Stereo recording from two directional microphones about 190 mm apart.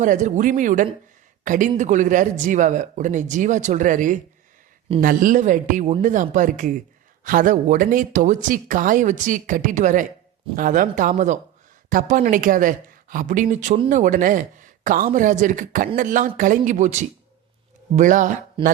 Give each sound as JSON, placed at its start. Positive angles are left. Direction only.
{"t": 0.0, "sound": "speech", "side_deg": -40}